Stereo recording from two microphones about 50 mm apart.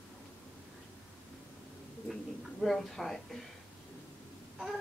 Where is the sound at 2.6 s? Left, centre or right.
Centre.